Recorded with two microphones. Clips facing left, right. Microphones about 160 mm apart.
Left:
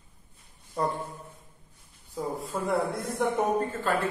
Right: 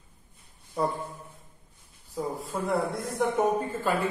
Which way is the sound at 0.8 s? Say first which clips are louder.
Right 1 dB; centre (ahead or behind).